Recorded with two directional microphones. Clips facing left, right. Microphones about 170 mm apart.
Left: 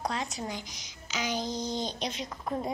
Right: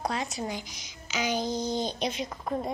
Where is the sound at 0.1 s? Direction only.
10° right (ahead or behind).